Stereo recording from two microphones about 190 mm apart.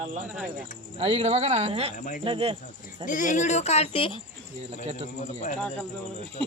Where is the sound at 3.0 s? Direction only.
40° left (ahead or behind).